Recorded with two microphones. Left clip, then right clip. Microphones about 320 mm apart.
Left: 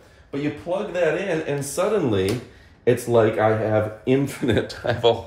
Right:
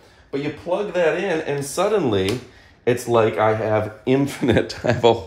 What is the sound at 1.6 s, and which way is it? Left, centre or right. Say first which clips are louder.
Speech: right 2 dB; right.